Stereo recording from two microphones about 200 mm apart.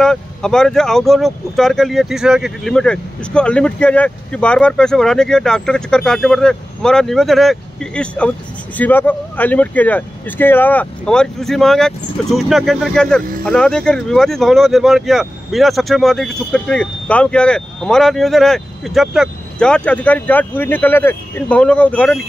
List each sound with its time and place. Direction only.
0.0 s speech: 5° left (ahead or behind)